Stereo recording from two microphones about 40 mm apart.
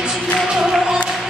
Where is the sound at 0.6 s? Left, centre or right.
Centre.